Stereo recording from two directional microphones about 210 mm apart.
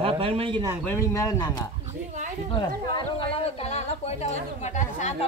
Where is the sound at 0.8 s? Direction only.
10° left (ahead or behind).